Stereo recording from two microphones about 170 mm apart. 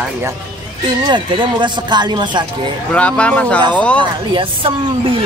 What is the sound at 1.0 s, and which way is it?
Speech, 30° right (ahead or behind).